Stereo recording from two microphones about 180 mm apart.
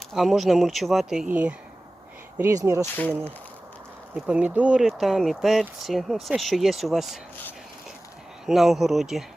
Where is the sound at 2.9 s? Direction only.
10° left (ahead or behind).